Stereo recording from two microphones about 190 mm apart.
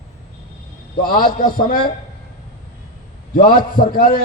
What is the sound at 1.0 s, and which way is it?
Speech, 50° left (ahead or behind).